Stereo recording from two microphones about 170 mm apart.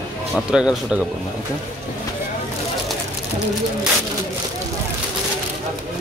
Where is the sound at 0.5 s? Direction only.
5° right (ahead or behind).